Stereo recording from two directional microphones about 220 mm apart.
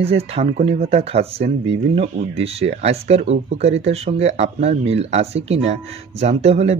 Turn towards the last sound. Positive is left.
turn(degrees=-30)  # may be behind; listen again after turning